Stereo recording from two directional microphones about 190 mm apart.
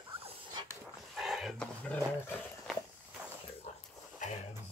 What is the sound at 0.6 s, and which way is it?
Dog, 20° right (ahead or behind).